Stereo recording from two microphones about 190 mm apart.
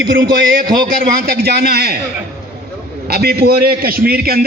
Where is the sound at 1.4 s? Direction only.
55° right (ahead or behind).